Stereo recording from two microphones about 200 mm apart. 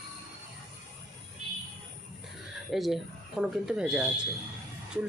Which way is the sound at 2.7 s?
Centre (ahead or behind).